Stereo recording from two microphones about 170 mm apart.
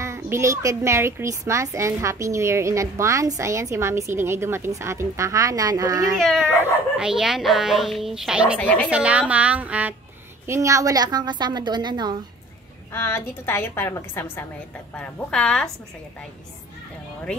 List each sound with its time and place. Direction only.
0.0 s a child's voice: 15° right (ahead or behind)
6.1 s speech: centre (ahead or behind)
8.5 s a woman's voice: 5° left (ahead or behind)
8.9 s a child's voice: 5° right (ahead or behind); by 12.2 s 25° right (ahead or behind)
12.9 s a woman's voice: 15° left (ahead or behind)